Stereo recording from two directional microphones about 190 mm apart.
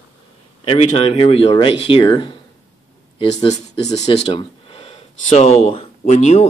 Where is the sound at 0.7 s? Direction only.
30° left (ahead or behind).